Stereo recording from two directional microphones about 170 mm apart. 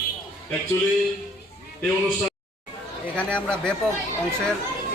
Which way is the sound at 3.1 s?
5° left (ahead or behind).